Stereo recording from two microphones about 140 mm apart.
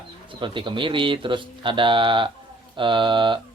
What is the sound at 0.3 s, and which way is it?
Speech, 35° right (ahead or behind).